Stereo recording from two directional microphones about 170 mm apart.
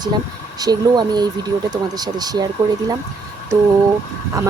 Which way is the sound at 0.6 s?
25° right (ahead or behind).